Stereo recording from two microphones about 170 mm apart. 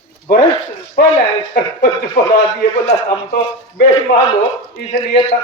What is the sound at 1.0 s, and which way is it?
Speech, 60° left (ahead or behind).